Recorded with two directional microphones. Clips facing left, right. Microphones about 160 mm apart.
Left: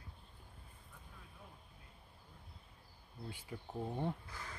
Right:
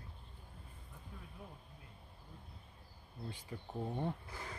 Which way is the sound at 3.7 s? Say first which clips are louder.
Even; centre (ahead or behind).